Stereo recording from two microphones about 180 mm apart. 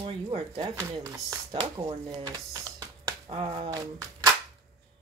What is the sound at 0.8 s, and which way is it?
Speech, 20° right (ahead or behind).